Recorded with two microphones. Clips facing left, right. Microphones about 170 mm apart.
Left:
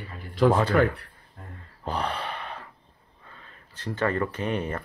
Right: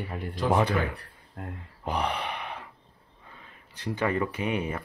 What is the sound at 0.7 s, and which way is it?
Speech, 60° left (ahead or behind).